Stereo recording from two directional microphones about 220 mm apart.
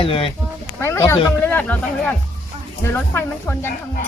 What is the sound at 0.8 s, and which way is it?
Speech, 10° left (ahead or behind).